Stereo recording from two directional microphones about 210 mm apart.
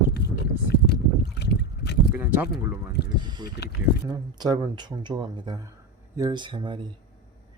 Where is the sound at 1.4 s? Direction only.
55° left (ahead or behind).